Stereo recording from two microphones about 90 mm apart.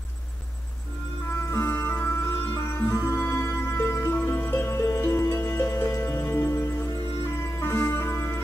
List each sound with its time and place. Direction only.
1.5 s music: 30° left (ahead or behind)